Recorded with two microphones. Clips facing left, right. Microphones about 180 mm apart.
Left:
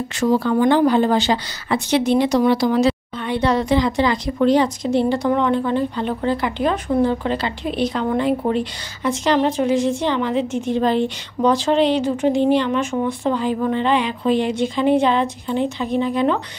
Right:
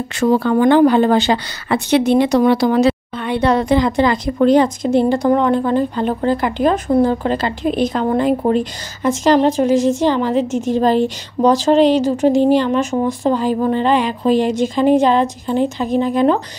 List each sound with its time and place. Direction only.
0.2 s speech: 60° right (ahead or behind); by 16.3 s 45° right (ahead or behind)